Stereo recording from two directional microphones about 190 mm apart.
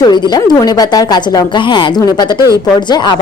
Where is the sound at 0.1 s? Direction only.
20° left (ahead or behind).